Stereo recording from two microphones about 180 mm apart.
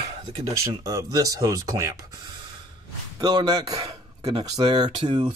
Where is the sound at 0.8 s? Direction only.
20° right (ahead or behind).